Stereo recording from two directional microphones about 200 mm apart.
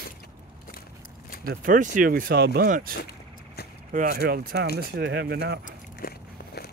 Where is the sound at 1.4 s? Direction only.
45° right (ahead or behind).